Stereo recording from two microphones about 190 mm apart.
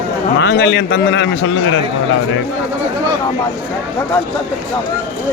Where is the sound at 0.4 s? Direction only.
80° left.